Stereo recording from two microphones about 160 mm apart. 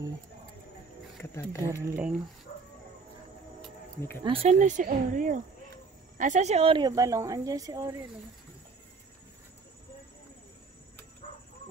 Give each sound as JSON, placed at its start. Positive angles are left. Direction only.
{"t": 1.7, "sound": "speech", "side_deg": -15}
{"t": 4.2, "sound": "speech", "side_deg": -35}
{"t": 6.9, "sound": "a woman's voice", "side_deg": -20}